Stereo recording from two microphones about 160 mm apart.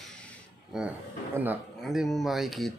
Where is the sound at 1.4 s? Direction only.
15° right (ahead or behind).